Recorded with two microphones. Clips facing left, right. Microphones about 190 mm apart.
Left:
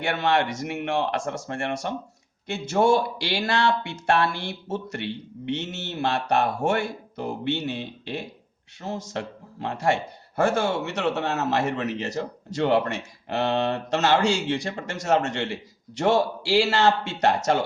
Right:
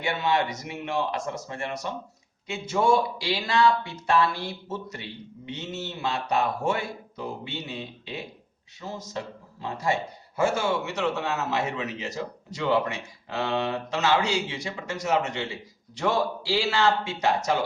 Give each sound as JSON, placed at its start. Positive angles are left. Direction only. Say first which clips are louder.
{"t": 0.1, "sound": "a man's voice", "louder": "left 2 dB", "side_deg": 70}
{"t": 5.5, "sound": "a man's voice", "louder": "left 5 dB", "side_deg": 75}